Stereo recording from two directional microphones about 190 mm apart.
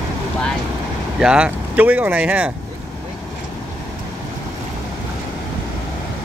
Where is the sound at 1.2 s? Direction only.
5° right (ahead or behind).